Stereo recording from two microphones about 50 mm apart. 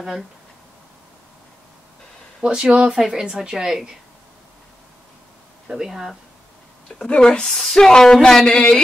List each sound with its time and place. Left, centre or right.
2.4 s a woman's voice: centre
5.7 s a woman's voice: centre
7.0 s a woman's voice: centre